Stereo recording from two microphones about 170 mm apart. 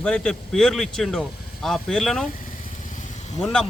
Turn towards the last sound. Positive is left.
turn(degrees=5)  # may be behind; listen again after turning